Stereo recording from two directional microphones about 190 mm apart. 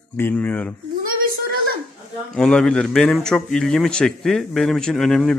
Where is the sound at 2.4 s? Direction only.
5° left (ahead or behind).